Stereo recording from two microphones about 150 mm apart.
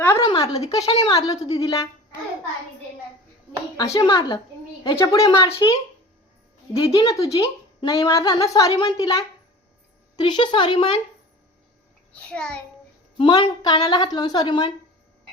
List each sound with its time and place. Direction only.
0.0 s a sound: 15° left (ahead or behind)
0.3 s a woman's voice: 35° left (ahead or behind)
1.1 s speech: 25° left (ahead or behind)
3.8 s speech: 25° left (ahead or behind)
6.7 s a woman's voice: 35° left (ahead or behind)
7.1 s speech: 20° left (ahead or behind)
10.2 s a woman's voice: 30° left (ahead or behind)
12.1 s a child's voice: 10° left (ahead or behind)
13.1 s a woman's voice: 35° left (ahead or behind)